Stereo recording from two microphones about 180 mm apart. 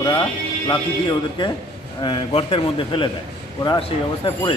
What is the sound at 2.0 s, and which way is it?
A man's voice, 30° left (ahead or behind).